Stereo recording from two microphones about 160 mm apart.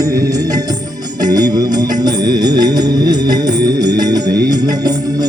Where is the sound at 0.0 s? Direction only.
20° right (ahead or behind).